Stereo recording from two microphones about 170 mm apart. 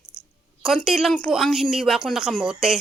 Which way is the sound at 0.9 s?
Centre (ahead or behind).